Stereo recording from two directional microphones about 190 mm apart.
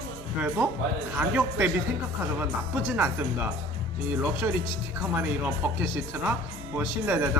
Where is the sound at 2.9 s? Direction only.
10° right (ahead or behind).